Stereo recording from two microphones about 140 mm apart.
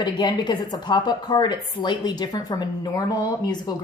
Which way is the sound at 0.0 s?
35° left (ahead or behind).